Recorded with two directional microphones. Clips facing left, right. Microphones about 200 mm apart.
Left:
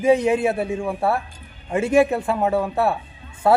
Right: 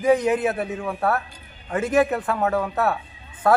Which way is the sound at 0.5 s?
10° left (ahead or behind).